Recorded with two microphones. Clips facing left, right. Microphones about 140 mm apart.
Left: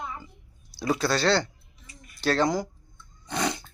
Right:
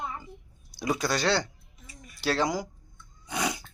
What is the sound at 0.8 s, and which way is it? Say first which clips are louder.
Speech: left 3 dB; 15° right (ahead or behind).